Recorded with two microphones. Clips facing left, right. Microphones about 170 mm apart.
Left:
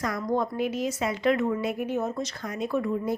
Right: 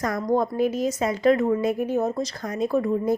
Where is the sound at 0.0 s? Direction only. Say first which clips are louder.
Right 4 dB; 45° right (ahead or behind).